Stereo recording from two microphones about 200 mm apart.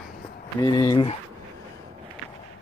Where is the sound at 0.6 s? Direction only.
20° left (ahead or behind).